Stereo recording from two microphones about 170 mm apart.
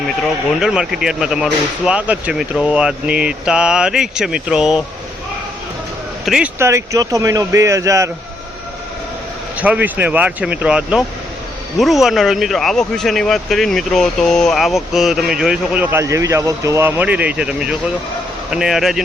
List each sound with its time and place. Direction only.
0.2 s speech: 5° right (ahead or behind)
6.2 s speech: 5° right (ahead or behind)
6.6 s speech: 15° right (ahead or behind)
9.6 s speech: 10° right (ahead or behind)